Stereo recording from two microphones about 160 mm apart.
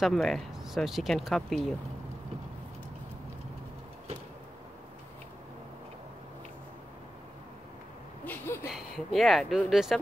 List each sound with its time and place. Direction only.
0.0 s speech: centre (ahead or behind)
8.3 s a sound: 15° left (ahead or behind)
8.6 s speech: centre (ahead or behind)